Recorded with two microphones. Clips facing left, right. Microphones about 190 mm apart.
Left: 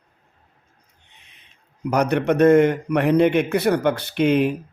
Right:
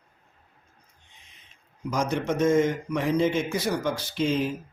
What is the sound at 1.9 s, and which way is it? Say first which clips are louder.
A man's voice: left 7 dB; 65° left (ahead or behind).